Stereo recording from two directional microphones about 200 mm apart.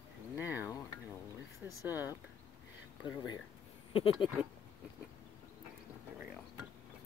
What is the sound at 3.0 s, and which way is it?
Speech, 20° left (ahead or behind).